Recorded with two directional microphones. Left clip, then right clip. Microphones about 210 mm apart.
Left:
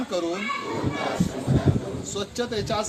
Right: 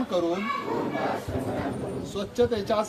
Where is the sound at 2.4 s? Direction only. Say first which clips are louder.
Right 5 dB; 40° right (ahead or behind).